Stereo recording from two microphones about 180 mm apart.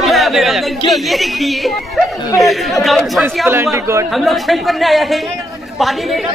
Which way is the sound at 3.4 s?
15° right (ahead or behind).